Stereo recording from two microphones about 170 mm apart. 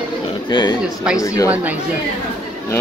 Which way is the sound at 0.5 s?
25° left (ahead or behind).